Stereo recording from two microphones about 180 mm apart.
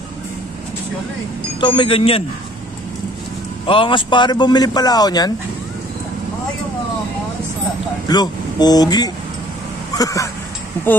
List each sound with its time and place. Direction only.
1.6 s speech: 25° left (ahead or behind)
3.6 s a man's voice: 30° left (ahead or behind)
8.1 s a man's voice: 20° left (ahead or behind)